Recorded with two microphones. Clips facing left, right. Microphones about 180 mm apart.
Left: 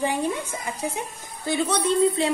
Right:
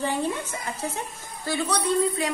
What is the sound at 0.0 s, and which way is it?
A woman's voice, 15° left (ahead or behind).